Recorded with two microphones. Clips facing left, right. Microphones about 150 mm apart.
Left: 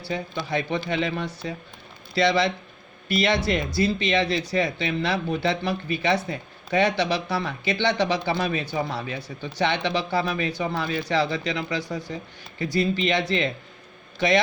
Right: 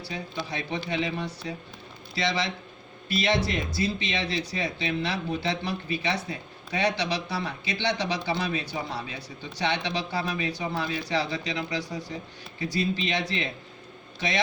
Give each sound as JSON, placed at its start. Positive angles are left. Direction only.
{"t": 0.1, "sound": "a man's voice", "side_deg": 60}